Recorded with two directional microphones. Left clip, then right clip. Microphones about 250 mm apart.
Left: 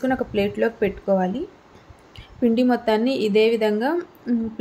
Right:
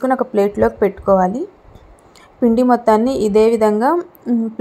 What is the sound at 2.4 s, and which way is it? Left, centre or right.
A woman's voice, centre.